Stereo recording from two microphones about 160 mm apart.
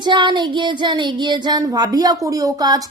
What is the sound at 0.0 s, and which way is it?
Speech, 30° right (ahead or behind).